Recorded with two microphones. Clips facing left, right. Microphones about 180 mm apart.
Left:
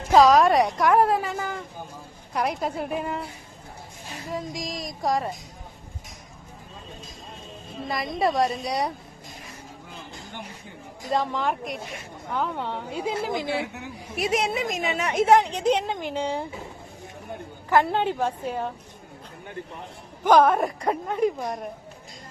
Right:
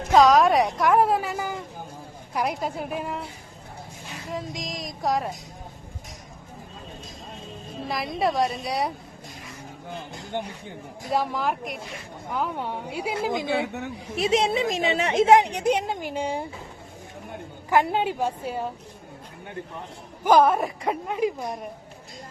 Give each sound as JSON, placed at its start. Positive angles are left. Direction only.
{"t": 0.1, "sound": "a woman's voice", "side_deg": 0}
{"t": 4.3, "sound": "a woman's voice", "side_deg": 0}
{"t": 7.9, "sound": "a woman's voice", "side_deg": 0}
{"t": 11.1, "sound": "a woman's voice", "side_deg": -10}
{"t": 15.3, "sound": "speech", "side_deg": -15}
{"t": 17.7, "sound": "speech", "side_deg": -10}
{"t": 20.2, "sound": "a woman's voice", "side_deg": -5}